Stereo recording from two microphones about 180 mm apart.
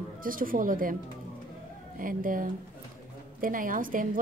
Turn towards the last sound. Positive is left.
turn(degrees=-50)  # may be behind; listen again after turning